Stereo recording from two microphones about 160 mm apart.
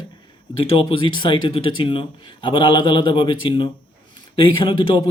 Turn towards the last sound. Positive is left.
turn(degrees=30)  # may be behind; listen again after turning